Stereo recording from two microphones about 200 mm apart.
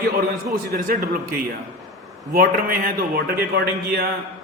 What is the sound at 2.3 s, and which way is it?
A man's voice, 45° right (ahead or behind).